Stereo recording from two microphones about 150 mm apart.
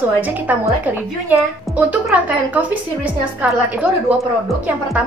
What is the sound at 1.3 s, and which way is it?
A woman's voice, 10° right (ahead or behind).